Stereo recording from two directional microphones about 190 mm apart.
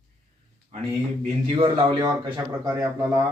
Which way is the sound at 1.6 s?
25° right (ahead or behind).